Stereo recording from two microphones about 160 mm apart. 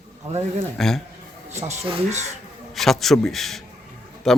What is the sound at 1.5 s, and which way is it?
Speech, 45° right (ahead or behind).